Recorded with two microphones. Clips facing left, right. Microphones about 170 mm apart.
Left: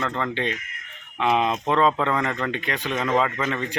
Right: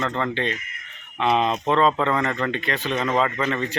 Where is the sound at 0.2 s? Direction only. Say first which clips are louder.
Right 1 dB; 10° left (ahead or behind).